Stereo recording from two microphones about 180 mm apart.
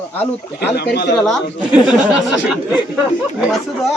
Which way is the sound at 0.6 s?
65° left (ahead or behind).